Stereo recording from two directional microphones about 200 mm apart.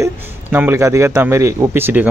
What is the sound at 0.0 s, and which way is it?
A man's voice, 10° right (ahead or behind).